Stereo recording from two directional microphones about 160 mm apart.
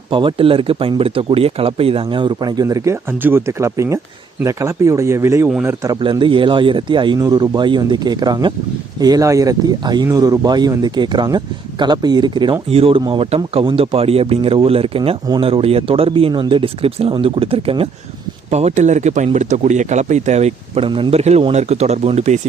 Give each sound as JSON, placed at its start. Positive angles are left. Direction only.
{"t": 0.1, "sound": "speech", "side_deg": -30}
{"t": 6.0, "sound": "speech", "side_deg": -30}